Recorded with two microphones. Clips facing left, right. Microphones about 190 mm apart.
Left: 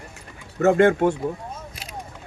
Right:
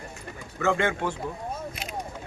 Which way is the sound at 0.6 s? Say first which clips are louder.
Left 9 dB; 45° left (ahead or behind).